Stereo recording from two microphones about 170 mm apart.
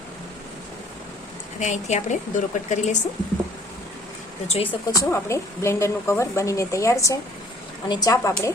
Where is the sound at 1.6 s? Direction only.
45° left (ahead or behind).